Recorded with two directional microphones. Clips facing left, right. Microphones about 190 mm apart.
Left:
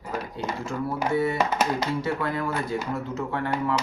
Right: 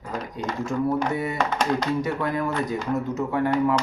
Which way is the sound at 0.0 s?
5° left (ahead or behind).